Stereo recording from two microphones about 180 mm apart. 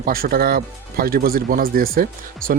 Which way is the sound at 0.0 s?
55° right (ahead or behind).